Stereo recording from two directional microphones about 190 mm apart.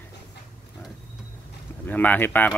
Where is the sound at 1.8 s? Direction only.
10° left (ahead or behind).